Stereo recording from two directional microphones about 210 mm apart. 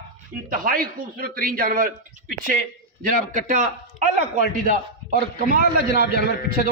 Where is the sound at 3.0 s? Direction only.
35° right (ahead or behind).